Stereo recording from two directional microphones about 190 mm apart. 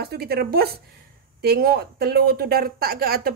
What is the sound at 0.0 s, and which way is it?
A woman's voice, 55° right (ahead or behind).